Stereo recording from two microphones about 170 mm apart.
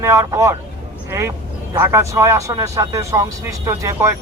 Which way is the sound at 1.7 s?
15° right (ahead or behind).